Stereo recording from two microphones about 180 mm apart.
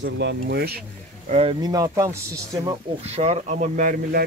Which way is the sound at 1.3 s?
30° right (ahead or behind).